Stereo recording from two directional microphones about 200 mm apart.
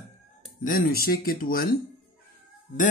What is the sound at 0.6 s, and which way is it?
Speech, 50° left (ahead or behind).